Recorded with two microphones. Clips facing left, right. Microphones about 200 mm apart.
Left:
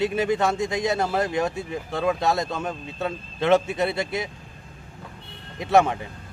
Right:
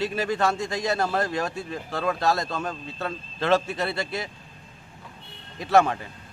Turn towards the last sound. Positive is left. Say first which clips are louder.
# left 1 dB
turn(degrees=20)  # may be behind; listen again after turning